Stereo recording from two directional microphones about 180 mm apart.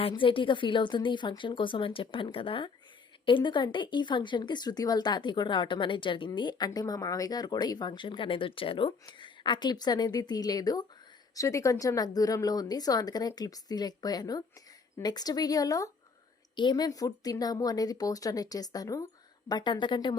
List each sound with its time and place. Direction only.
0.0 s a woman's voice: 30° left (ahead or behind)